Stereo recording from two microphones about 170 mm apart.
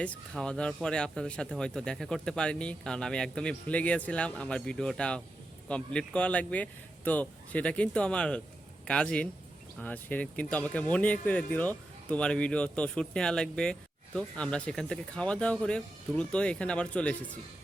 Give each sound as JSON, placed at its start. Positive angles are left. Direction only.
{"t": 0.0, "sound": "speech", "side_deg": 5}